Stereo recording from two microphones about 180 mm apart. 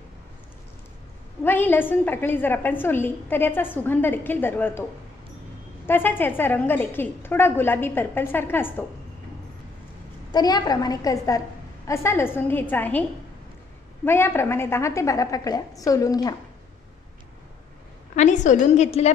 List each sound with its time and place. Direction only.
1.4 s a woman's voice: 10° left (ahead or behind)
5.9 s a woman's voice: 10° left (ahead or behind)
10.3 s a woman's voice: 25° left (ahead or behind)
14.0 s a woman's voice: 15° left (ahead or behind)
18.1 s a woman's voice: 40° left (ahead or behind)